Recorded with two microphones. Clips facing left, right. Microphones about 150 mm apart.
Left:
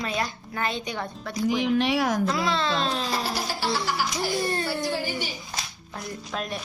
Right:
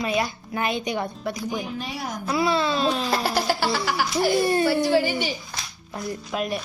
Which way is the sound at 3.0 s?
65° right (ahead or behind).